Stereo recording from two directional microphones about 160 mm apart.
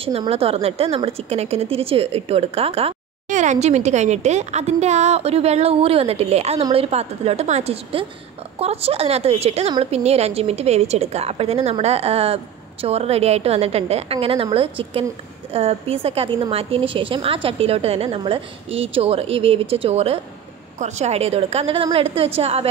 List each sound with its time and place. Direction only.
0.0 s a woman's voice: 40° right (ahead or behind)
3.3 s a woman's voice: 50° right (ahead or behind)